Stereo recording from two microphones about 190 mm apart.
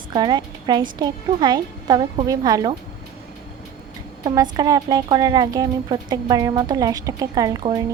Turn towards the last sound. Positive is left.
turn(degrees=-20)  # may be behind; listen again after turning